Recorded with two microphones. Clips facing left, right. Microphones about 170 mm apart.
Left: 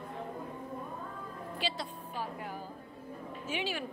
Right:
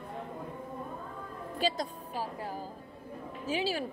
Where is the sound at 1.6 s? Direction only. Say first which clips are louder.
Right 7 dB; 40° right (ahead or behind).